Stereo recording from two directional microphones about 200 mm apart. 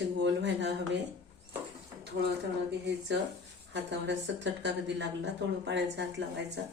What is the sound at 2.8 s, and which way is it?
Speech, 60° right (ahead or behind).